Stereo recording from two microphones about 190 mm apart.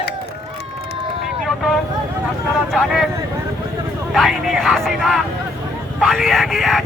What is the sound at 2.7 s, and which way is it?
Speech, centre (ahead or behind).